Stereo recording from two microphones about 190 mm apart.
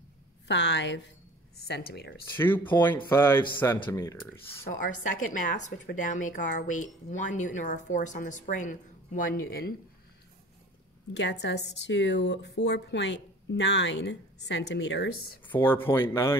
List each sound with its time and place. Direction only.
0.5 s a woman's voice: 70° left (ahead or behind)
1.7 s speech: 55° left (ahead or behind)
2.2 s speech: 10° left (ahead or behind)
4.6 s speech: 45° left (ahead or behind)
11.1 s speech: 65° left (ahead or behind)
15.5 s speech: 10° left (ahead or behind)